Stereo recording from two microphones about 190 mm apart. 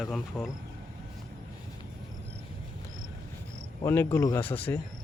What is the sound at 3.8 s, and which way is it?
Speech, 10° left (ahead or behind).